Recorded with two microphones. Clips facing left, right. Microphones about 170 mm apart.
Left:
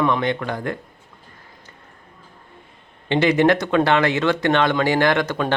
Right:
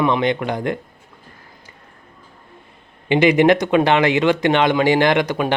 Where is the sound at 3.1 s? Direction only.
15° right (ahead or behind).